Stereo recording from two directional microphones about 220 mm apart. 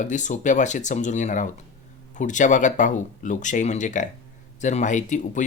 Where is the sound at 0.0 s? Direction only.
35° left (ahead or behind).